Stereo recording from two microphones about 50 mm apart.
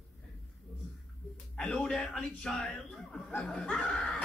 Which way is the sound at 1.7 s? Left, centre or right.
Centre.